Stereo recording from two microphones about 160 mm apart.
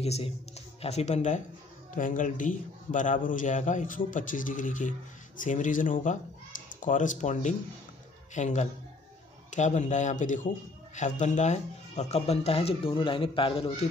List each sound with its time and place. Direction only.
0.0 s a man's voice: 40° left (ahead or behind)